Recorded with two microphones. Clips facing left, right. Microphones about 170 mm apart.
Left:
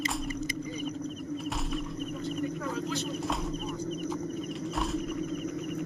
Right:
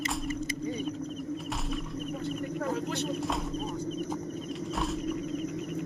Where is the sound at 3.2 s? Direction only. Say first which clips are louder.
Even; centre (ahead or behind).